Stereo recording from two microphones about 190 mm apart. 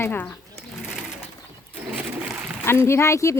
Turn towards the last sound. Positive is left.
turn(degrees=15)  # may be behind; listen again after turning